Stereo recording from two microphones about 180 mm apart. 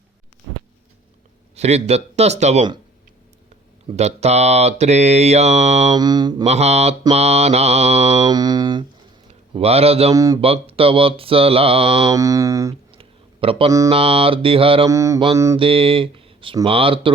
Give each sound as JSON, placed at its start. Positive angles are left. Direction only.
{"t": 1.5, "sound": "mantra", "side_deg": -35}
{"t": 3.8, "sound": "mantra", "side_deg": -35}
{"t": 5.9, "sound": "speech", "side_deg": -20}
{"t": 6.4, "sound": "mantra", "side_deg": -35}
{"t": 8.3, "sound": "speech", "side_deg": -20}
{"t": 9.6, "sound": "mantra", "side_deg": -35}
{"t": 10.1, "sound": "speech", "side_deg": -20}
{"t": 10.4, "sound": "mantra", "side_deg": -30}
{"t": 12.1, "sound": "speech", "side_deg": -20}
{"t": 12.9, "sound": "a sound", "side_deg": -30}
{"t": 13.7, "sound": "mantra", "side_deg": -20}
{"t": 13.9, "sound": "mantra", "side_deg": -30}
{"t": 14.8, "sound": "mantra", "side_deg": -15}
{"t": 15.5, "sound": "speech", "side_deg": -30}